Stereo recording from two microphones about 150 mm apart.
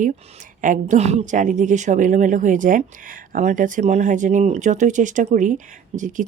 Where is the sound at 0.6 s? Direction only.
55° right (ahead or behind).